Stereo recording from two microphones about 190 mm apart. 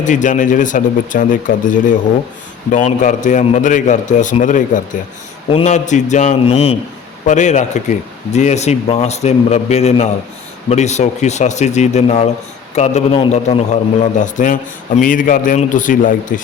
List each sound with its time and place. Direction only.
0.0 s a man's voice: 40° left (ahead or behind)